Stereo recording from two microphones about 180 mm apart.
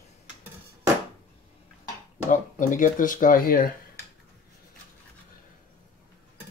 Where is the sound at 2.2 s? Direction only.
45° left (ahead or behind).